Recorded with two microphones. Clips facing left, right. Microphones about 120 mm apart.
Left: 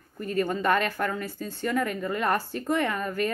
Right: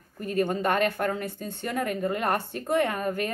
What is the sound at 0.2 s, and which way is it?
Speech, 50° right (ahead or behind).